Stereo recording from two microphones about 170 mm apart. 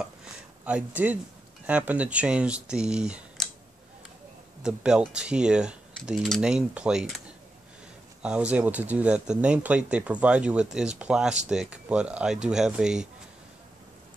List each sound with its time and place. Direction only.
0.7 s speech: 10° right (ahead or behind)
4.6 s speech: 5° right (ahead or behind)
8.2 s speech: 5° right (ahead or behind)